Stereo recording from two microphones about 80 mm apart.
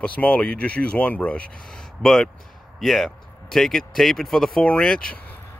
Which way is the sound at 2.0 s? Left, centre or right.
Centre.